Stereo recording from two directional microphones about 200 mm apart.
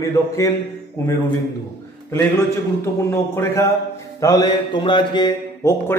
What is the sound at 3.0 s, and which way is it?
Speech, 10° left (ahead or behind).